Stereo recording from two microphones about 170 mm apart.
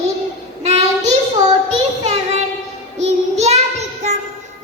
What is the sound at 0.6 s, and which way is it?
Child singing, 40° right (ahead or behind).